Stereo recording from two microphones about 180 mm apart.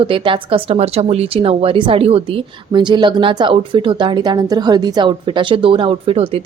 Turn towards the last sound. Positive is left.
turn(degrees=-30)  # may be behind; listen again after turning